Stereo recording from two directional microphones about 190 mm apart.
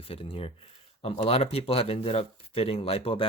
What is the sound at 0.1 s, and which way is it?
Speech, 30° left (ahead or behind).